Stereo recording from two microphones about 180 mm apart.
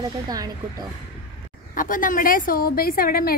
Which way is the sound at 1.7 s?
50° left (ahead or behind).